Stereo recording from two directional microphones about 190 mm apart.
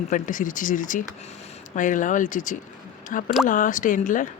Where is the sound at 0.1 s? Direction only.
45° left (ahead or behind).